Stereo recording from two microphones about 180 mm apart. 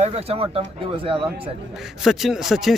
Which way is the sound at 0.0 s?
35° right (ahead or behind).